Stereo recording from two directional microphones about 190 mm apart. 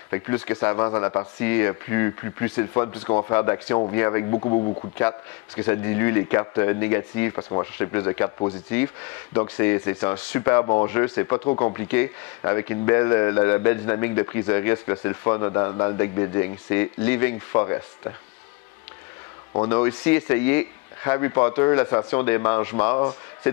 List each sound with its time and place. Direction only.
0.1 s speech: 15° left (ahead or behind)
4.3 s speech: 30° left (ahead or behind)
5.6 s speech: 15° left (ahead or behind)
19.5 s a man's voice: 20° left (ahead or behind)